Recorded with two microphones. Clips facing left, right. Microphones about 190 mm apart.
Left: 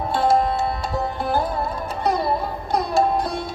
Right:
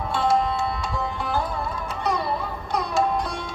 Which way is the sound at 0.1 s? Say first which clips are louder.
Left 3 dB; 40° left (ahead or behind).